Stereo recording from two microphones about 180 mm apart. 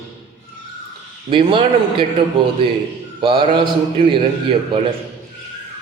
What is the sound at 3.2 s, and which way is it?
Speech, 30° right (ahead or behind).